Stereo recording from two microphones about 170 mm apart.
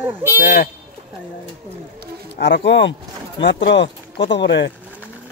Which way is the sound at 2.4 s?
90° left.